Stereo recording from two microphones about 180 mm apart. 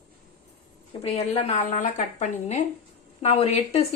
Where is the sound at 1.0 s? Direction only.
35° left (ahead or behind).